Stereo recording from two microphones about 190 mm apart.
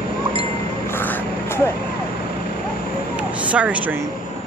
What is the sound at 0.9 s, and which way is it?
Vehicle, 10° left (ahead or behind).